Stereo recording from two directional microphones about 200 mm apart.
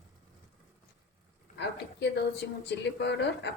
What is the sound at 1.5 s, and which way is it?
A woman's voice, 55° left (ahead or behind).